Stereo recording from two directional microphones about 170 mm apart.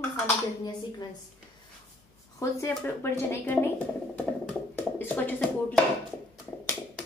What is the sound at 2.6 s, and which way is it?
Speech, 15° left (ahead or behind).